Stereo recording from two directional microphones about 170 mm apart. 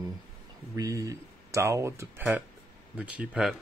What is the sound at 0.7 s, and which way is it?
Speech, 20° right (ahead or behind).